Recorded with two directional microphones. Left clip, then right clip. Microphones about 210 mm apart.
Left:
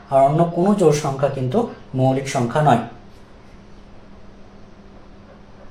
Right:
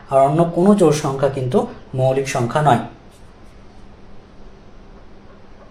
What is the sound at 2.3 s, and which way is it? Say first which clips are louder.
Speech: right 1 dB; 45° right (ahead or behind).